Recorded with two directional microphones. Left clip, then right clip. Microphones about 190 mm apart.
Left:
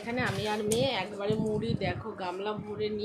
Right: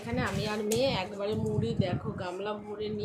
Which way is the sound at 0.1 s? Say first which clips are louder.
Left 2 dB; 5° left (ahead or behind).